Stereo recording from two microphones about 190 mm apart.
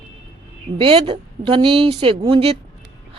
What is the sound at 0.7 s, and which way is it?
Speech, 30° right (ahead or behind).